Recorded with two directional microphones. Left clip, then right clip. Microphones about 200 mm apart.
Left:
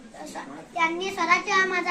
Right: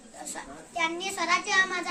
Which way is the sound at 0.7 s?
25° right (ahead or behind).